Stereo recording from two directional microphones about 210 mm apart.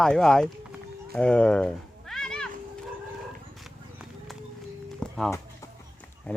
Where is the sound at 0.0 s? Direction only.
Centre (ahead or behind).